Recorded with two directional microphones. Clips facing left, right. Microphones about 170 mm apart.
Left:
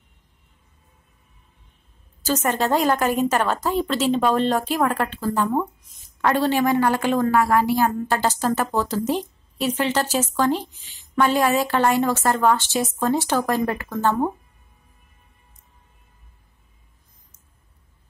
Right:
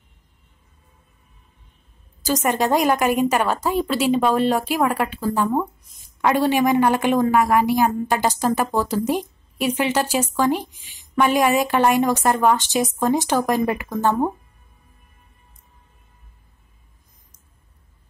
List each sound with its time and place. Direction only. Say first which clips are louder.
2.2 s a woman's voice: right 2 dB; 15° right (ahead or behind)